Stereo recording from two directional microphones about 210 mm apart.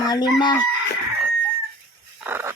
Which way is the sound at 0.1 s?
20° left (ahead or behind).